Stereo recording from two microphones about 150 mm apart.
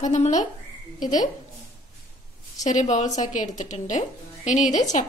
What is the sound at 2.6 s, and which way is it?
A woman's voice, 55° left (ahead or behind).